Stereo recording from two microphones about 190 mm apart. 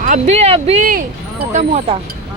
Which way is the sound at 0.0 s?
40° right (ahead or behind).